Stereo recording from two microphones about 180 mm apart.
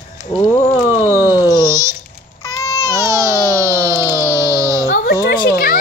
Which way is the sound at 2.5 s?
20° left (ahead or behind).